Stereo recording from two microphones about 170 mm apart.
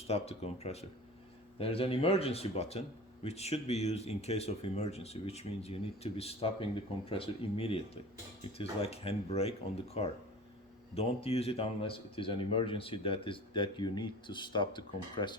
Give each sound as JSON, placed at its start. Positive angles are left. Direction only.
{"t": 0.1, "sound": "speech", "side_deg": 40}
{"t": 8.8, "sound": "speech", "side_deg": 35}